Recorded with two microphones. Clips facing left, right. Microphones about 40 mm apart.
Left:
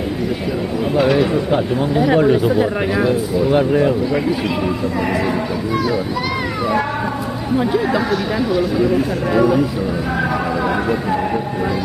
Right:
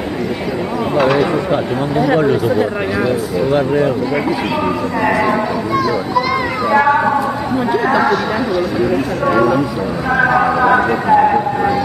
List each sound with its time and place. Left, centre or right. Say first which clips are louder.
0.9 s speech: right 2 dB; centre
1.5 s speech: right 1 dB; centre
5.0 s speech: right 7 dB; right
5.8 s a child's voice: right 5 dB; centre
6.8 s speech: right 8 dB; right
9.3 s speech: right 2 dB; centre
10.1 s speech: right 10 dB; right